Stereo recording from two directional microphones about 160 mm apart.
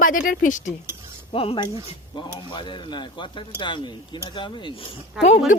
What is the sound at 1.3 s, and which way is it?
Speech, 35° left (ahead or behind).